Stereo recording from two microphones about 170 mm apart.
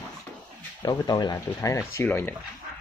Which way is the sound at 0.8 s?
25° left (ahead or behind).